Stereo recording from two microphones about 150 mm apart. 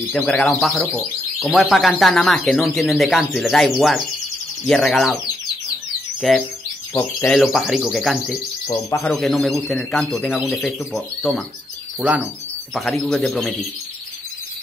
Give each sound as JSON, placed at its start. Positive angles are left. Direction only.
{"t": 0.1, "sound": "speech", "side_deg": 5}
{"t": 6.2, "sound": "speech", "side_deg": 0}
{"t": 6.9, "sound": "speech", "side_deg": 20}
{"t": 7.2, "sound": "speech", "side_deg": 0}
{"t": 12.0, "sound": "speech", "side_deg": -10}
{"t": 12.7, "sound": "speech", "side_deg": 0}